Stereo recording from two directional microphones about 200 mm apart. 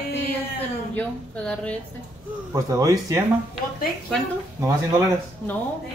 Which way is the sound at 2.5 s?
15° right (ahead or behind).